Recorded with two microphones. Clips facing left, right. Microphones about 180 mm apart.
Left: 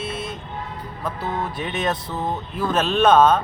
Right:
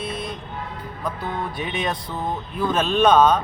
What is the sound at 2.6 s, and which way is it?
Speech, 5° left (ahead or behind).